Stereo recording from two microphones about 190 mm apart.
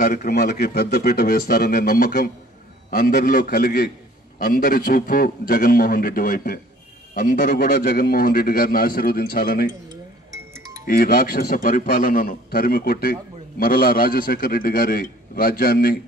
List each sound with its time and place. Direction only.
0.0 s a man's voice: 45° left (ahead or behind)
9.8 s music: 15° right (ahead or behind)
10.9 s a man's voice: 50° left (ahead or behind)